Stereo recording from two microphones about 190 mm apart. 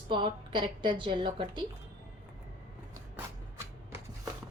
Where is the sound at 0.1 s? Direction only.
25° right (ahead or behind).